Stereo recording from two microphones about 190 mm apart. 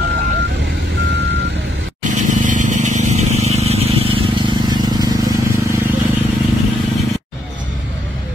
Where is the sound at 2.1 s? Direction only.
40° right (ahead or behind); by 5.3 s 20° right (ahead or behind).